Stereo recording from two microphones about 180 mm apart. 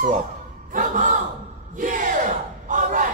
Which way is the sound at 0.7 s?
45° right (ahead or behind).